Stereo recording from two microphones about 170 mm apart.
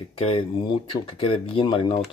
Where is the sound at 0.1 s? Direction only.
35° left (ahead or behind).